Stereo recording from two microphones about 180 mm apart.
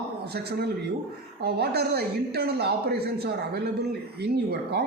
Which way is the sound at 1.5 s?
65° right (ahead or behind).